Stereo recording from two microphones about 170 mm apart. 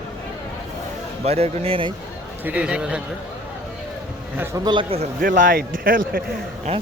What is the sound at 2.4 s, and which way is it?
Speech, 5° right (ahead or behind).